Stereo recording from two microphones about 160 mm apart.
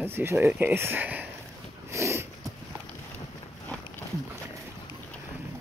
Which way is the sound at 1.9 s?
15° right (ahead or behind).